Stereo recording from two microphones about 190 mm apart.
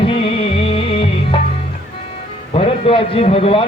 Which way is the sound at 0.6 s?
30° left (ahead or behind).